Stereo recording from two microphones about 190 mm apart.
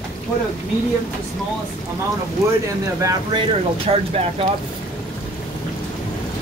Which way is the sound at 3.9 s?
30° right (ahead or behind).